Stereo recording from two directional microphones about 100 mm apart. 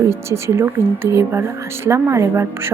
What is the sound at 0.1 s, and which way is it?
A woman's voice, 25° right (ahead or behind).